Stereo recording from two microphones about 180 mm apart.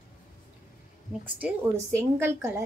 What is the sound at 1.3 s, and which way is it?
Speech, 15° right (ahead or behind).